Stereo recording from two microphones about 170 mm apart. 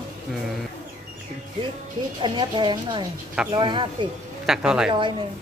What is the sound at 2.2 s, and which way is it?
A woman's voice, 25° right (ahead or behind).